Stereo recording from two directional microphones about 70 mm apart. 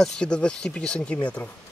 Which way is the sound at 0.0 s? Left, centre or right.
Centre.